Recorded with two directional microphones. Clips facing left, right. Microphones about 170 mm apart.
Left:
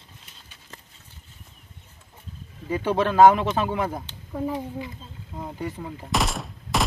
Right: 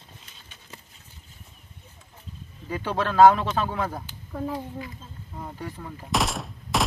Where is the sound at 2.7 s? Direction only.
15° left (ahead or behind).